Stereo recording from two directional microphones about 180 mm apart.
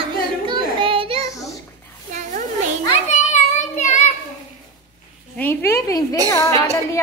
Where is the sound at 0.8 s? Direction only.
30° right (ahead or behind).